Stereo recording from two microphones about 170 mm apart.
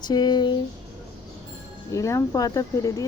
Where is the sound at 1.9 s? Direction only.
20° left (ahead or behind).